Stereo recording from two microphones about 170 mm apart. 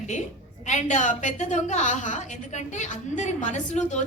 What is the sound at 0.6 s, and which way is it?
A woman's voice, 45° left (ahead or behind).